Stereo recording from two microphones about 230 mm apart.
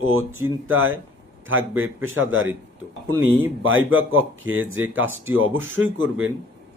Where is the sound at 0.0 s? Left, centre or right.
Right.